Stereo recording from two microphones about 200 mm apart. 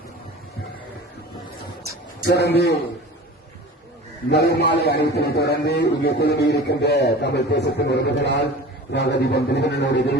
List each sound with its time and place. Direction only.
2.2 s a man's voice: 55° left (ahead or behind)
4.3 s a man's voice: 55° left (ahead or behind)